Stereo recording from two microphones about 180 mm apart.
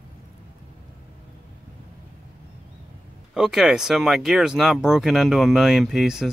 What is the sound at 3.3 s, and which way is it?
Speech, centre (ahead or behind).